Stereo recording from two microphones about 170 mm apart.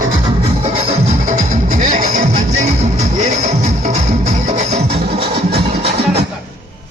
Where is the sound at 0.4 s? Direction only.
35° right (ahead or behind).